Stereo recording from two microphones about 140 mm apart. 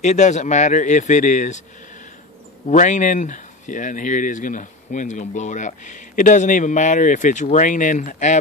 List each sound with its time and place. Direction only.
0.0 s speech: 55° left (ahead or behind)
2.7 s speech: 60° left (ahead or behind)